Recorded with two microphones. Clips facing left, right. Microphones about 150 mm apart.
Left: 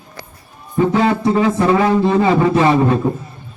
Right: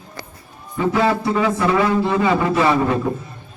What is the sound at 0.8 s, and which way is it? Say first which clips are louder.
A man's voice: left 3 dB; 35° left (ahead or behind).